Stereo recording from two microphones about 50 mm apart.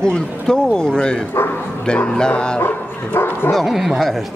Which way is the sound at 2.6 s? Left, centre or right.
Left.